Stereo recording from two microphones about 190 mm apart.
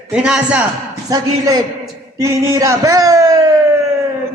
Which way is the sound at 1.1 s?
20° right (ahead or behind).